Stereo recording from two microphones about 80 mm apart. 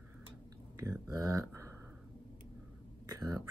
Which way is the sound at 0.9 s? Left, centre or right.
Right.